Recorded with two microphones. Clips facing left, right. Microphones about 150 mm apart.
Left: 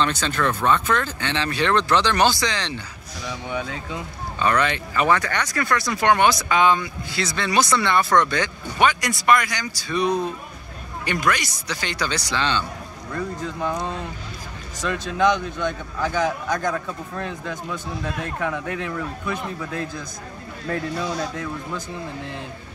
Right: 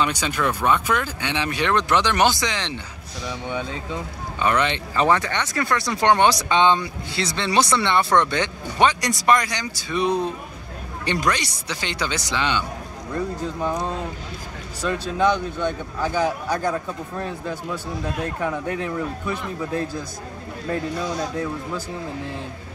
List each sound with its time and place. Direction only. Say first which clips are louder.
0.0 s speech: even; 10° right (ahead or behind)
4.4 s speech: even; 20° right (ahead or behind)
10.0 s speech: right 1 dB; 10° left (ahead or behind)
11.1 s speech: even; 30° right (ahead or behind); by 13.9 s 10° right (ahead or behind)
14.9 s speech: even; 30° right (ahead or behind)
18.7 s speech: right 2 dB; 30° right (ahead or behind)
20.6 s speech: even; 20° right (ahead or behind)